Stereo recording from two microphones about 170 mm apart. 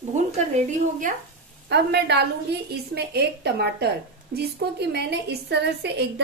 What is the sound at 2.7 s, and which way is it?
A woman's voice, 75° right (ahead or behind).